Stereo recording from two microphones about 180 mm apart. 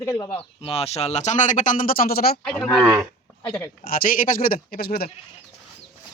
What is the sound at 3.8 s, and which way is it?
Speech, 55° left (ahead or behind).